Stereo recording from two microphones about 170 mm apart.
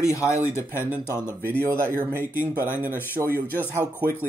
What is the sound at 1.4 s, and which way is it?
Speech, 15° right (ahead or behind).